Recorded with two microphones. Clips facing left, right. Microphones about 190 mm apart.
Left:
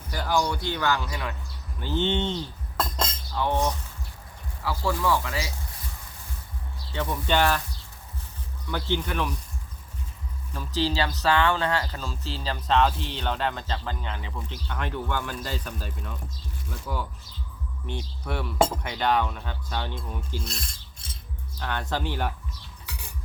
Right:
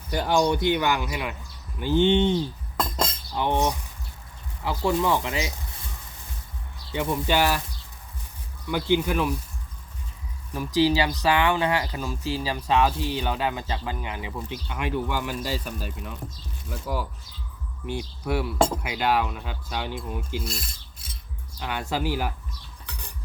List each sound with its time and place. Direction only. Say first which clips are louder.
0.1 s speech: right 4 dB; 25° right (ahead or behind)
2.7 s cutlery: right 1 dB; 5° left (ahead or behind)
3.0 s cutlery: right 2 dB; 5° right (ahead or behind)
3.4 s speech: right 2 dB; 20° right (ahead or behind)
6.9 s speech: right 2 dB; 10° right (ahead or behind)
8.7 s speech: right 5 dB; 10° right (ahead or behind)
10.5 s speech: right 6 dB; 15° right (ahead or behind)
17.8 s speech: right 5 dB; 10° right (ahead or behind)